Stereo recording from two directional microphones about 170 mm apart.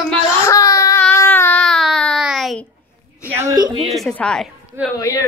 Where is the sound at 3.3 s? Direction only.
20° right (ahead or behind).